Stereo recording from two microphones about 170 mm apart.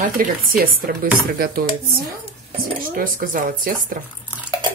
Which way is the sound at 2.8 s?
55° right (ahead or behind).